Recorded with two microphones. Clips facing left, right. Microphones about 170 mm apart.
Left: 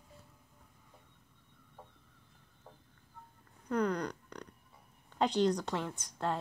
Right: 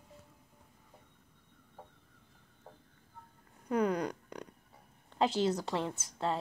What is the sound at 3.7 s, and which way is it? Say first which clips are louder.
A woman's voice: right 2 dB; 10° right (ahead or behind).